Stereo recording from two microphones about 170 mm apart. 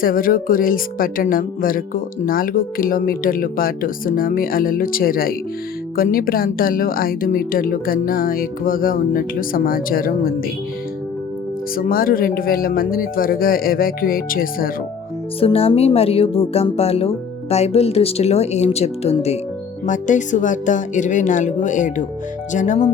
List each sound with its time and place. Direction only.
0.0 s speech: 55° left (ahead or behind)
11.8 s speech: 55° left (ahead or behind)
15.4 s a woman's voice: 35° left (ahead or behind)